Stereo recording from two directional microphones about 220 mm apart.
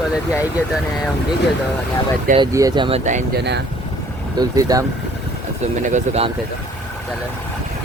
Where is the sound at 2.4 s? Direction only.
15° right (ahead or behind).